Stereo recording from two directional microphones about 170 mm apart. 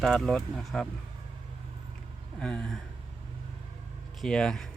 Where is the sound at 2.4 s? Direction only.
5° left (ahead or behind).